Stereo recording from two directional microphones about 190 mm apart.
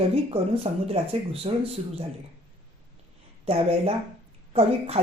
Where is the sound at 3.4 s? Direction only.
30° right (ahead or behind).